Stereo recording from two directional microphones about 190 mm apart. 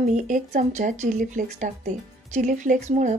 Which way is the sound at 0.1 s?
40° right (ahead or behind).